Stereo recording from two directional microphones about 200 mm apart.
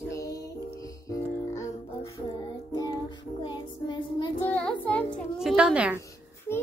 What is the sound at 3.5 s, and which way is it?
Child singing, 20° left (ahead or behind).